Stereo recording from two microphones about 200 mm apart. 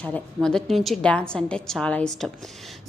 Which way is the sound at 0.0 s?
5° left (ahead or behind).